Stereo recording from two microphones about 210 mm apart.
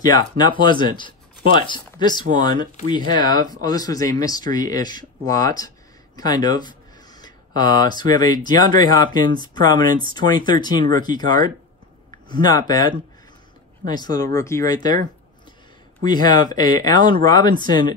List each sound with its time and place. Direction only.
0.0 s speech: 20° left (ahead or behind)
2.5 s speech: 40° right (ahead or behind)
3.1 s speech: 20° left (ahead or behind)